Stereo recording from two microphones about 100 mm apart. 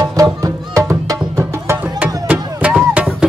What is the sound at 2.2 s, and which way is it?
Music, 15° right (ahead or behind).